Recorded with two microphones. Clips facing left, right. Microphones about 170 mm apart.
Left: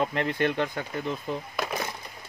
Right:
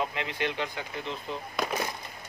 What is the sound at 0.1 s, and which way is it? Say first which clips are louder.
Speech: left 6 dB; 50° left (ahead or behind).